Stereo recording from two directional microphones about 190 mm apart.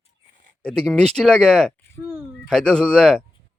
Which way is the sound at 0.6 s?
5° left (ahead or behind).